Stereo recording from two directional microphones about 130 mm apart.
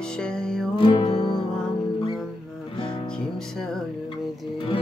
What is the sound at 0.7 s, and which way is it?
Music, 40° left (ahead or behind).